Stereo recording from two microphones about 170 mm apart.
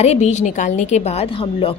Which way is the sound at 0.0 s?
40° left (ahead or behind).